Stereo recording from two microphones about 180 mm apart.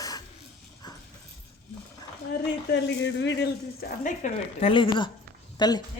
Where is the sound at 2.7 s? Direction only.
80° left.